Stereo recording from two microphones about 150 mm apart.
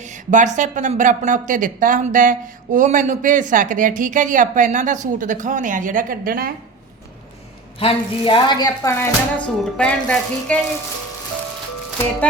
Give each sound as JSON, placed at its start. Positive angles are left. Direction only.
{"t": 0.0, "sound": "speech", "side_deg": -55}
{"t": 7.8, "sound": "a woman's voice", "side_deg": 35}